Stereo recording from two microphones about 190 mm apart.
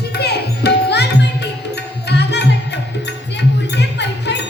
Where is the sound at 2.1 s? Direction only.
60° left (ahead or behind).